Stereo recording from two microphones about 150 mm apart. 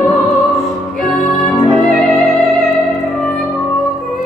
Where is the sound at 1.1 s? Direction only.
Centre (ahead or behind).